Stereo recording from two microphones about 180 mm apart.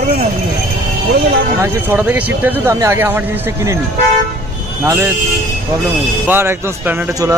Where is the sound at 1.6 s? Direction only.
10° right (ahead or behind).